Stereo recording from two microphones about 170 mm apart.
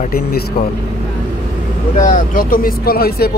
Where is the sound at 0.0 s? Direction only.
60° left (ahead or behind).